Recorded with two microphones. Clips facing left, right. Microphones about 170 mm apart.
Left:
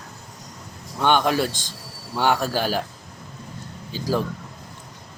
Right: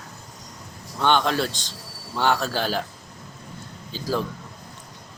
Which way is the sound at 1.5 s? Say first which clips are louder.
Left 2 dB; 20° right (ahead or behind).